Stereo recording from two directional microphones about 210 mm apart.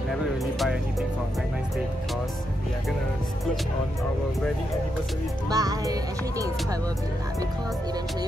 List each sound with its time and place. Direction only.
5.5 s speech: 15° right (ahead or behind)